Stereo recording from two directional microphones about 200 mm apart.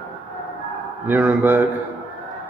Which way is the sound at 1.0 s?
10° right (ahead or behind).